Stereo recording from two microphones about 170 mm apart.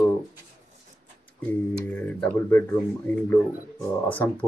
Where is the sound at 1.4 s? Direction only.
10° left (ahead or behind).